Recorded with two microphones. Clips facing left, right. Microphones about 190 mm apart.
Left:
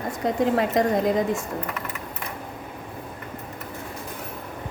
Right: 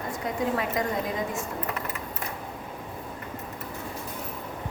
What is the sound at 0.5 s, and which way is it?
Speech, 40° left (ahead or behind).